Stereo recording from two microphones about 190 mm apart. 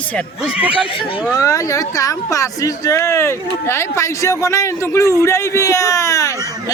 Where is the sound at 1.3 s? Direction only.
15° left (ahead or behind).